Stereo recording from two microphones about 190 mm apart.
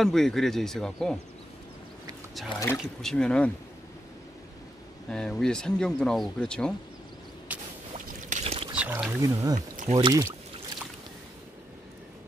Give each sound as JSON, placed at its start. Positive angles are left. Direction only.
{"t": 0.0, "sound": "speech", "side_deg": 0}
{"t": 2.8, "sound": "speech", "side_deg": 0}
{"t": 5.1, "sound": "speech", "side_deg": 5}
{"t": 7.5, "sound": "a sound", "side_deg": -10}
{"t": 8.3, "sound": "pour", "side_deg": -30}
{"t": 8.7, "sound": "wild animals", "side_deg": -5}
{"t": 9.2, "sound": "speech", "side_deg": -20}
{"t": 9.6, "sound": "speech", "side_deg": -40}
{"t": 9.9, "sound": "speech", "side_deg": -20}